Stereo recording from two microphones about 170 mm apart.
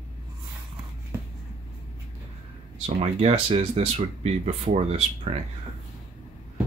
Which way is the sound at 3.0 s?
35° right (ahead or behind).